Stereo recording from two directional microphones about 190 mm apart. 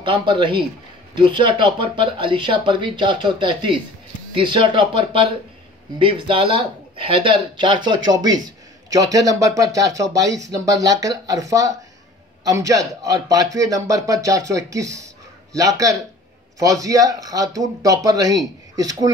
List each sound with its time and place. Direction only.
0.0 s a man's voice: 25° right (ahead or behind)